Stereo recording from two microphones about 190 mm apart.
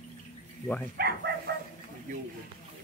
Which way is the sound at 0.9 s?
55° right (ahead or behind).